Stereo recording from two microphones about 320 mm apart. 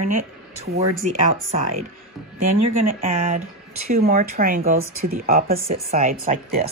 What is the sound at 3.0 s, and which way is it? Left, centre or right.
Speech, centre.